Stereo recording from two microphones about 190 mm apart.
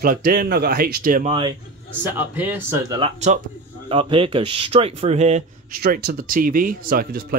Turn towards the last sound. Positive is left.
turn(degrees=-50)  # may be behind; listen again after turning